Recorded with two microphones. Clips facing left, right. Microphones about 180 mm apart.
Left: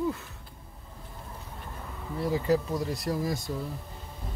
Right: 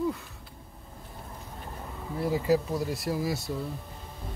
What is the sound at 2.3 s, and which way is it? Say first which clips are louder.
Speech: right 1 dB; 5° right (ahead or behind).